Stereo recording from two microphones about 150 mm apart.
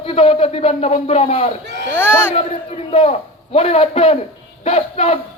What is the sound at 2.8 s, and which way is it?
Speech, 45° left (ahead or behind).